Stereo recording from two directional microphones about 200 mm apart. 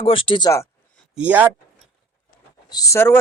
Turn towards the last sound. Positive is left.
turn(degrees=15)  # may be behind; listen again after turning